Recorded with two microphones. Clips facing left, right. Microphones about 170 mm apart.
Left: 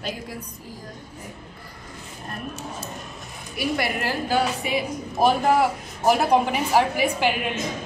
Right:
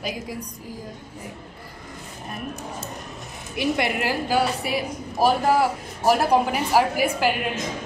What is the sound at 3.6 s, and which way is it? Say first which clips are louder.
A woman's voice: right 2 dB; 20° right (ahead or behind).